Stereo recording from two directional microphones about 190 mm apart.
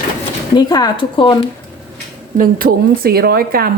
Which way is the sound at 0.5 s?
20° left (ahead or behind).